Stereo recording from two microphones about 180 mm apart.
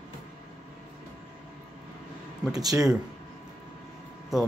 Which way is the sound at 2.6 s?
20° right (ahead or behind).